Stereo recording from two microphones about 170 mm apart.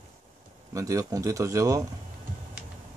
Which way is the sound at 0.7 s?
20° right (ahead or behind).